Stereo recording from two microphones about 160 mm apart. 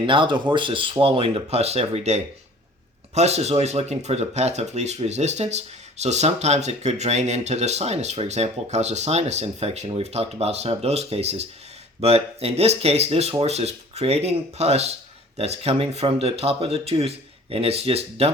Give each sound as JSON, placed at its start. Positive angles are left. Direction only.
{"t": 0.0, "sound": "speech", "side_deg": -30}